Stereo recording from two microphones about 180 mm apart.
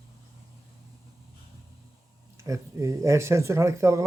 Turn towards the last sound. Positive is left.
turn(degrees=-15)  # may be behind; listen again after turning